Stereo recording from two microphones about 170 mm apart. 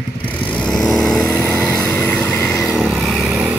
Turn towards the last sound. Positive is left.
turn(degrees=-5)  # may be behind; listen again after turning